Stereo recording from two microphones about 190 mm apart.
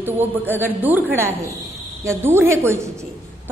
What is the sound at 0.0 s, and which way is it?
A woman's voice, 10° right (ahead or behind).